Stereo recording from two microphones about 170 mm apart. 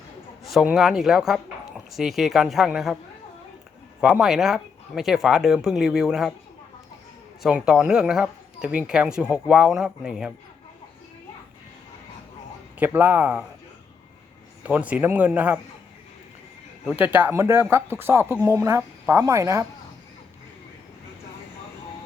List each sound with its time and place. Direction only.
0.4 s speech: centre (ahead or behind)
4.0 s speech: 5° right (ahead or behind)
7.4 s speech: 5° right (ahead or behind)
12.8 s speech: 10° right (ahead or behind)
14.6 s speech: 10° right (ahead or behind)
16.9 s speech: 10° right (ahead or behind)